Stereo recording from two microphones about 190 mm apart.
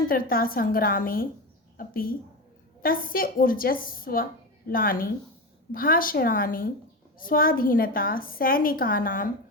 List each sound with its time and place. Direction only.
0.1 s a woman's voice: 50° left (ahead or behind)